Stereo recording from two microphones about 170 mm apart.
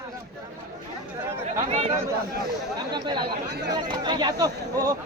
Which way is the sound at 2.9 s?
25° right (ahead or behind).